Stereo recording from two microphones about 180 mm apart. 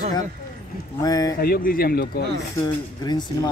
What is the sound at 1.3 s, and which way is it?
Speech, 55° left (ahead or behind).